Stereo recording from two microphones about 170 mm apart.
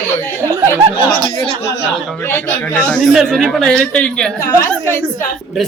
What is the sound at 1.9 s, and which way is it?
Speech, centre (ahead or behind).